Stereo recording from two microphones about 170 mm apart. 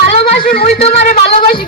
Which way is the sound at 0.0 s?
60° left (ahead or behind).